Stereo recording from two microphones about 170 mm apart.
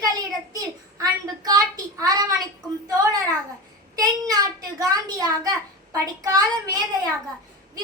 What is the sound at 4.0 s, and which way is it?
A child's voice, 20° right (ahead or behind).